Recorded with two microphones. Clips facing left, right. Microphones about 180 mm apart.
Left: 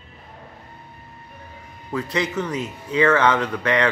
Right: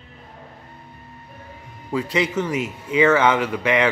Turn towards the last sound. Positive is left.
turn(degrees=-10)  # may be behind; listen again after turning